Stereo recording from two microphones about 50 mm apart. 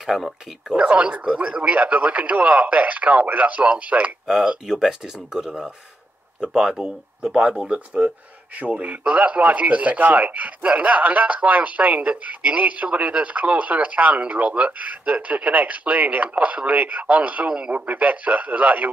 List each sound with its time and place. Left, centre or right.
0.0 s speech: centre
0.7 s a man's voice: right
4.6 s a man's voice: centre; by 18.9 s right